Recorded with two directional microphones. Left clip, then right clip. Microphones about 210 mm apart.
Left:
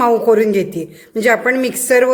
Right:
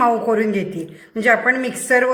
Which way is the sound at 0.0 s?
50° left (ahead or behind).